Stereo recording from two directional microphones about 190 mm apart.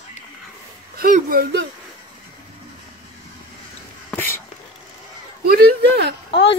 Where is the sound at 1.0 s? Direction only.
45° right (ahead or behind).